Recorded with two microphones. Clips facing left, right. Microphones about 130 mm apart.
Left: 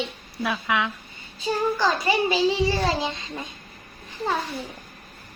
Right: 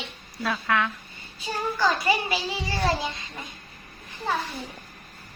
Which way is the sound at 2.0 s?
25° left (ahead or behind).